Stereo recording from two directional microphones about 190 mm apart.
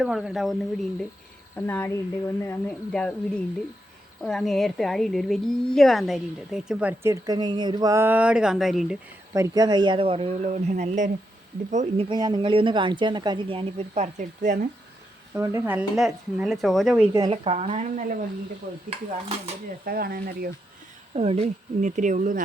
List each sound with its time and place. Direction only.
0.0 s a woman's voice: 5° right (ahead or behind)
9.3 s speech: 20° right (ahead or behind); by 12.0 s 40° right (ahead or behind)
12.0 s speech: 25° right (ahead or behind); by 14.7 s 45° right (ahead or behind)
15.4 s a woman's voice: 10° right (ahead or behind)
17.1 s speech: 20° right (ahead or behind)
17.3 s speech: 35° right (ahead or behind)
19.8 s speech: 50° right (ahead or behind)
21.2 s speech: 35° right (ahead or behind)